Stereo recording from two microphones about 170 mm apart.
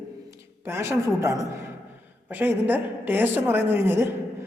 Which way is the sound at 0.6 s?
15° right (ahead or behind).